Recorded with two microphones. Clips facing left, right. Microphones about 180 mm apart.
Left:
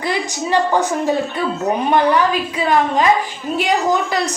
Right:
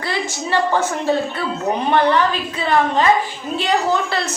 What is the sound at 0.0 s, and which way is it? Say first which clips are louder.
A woman's voice: left 3 dB; 15° left (ahead or behind).